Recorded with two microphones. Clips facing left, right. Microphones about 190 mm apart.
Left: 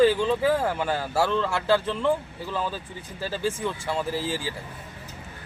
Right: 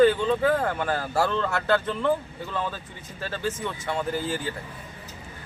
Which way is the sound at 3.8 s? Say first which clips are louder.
Right 2 dB; 5° left (ahead or behind).